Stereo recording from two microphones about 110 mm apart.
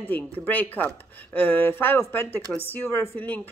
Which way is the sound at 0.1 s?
15° left (ahead or behind).